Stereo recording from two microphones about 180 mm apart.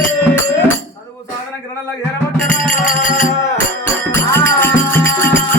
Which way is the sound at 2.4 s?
45° left (ahead or behind).